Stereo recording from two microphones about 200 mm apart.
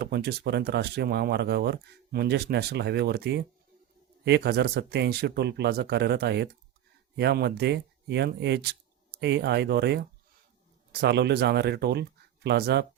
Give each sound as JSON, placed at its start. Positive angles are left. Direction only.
{"t": 0.0, "sound": "speech", "side_deg": -55}